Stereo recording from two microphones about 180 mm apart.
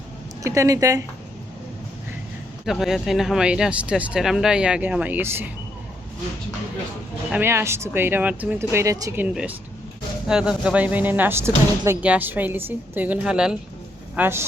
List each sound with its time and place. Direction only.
0.4 s speech: 15° right (ahead or behind)
2.6 s speech: centre (ahead or behind)
7.3 s speech: 10° right (ahead or behind)
9.3 s speech: 5° right (ahead or behind)